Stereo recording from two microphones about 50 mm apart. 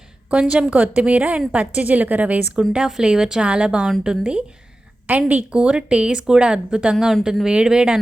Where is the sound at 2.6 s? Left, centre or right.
Centre.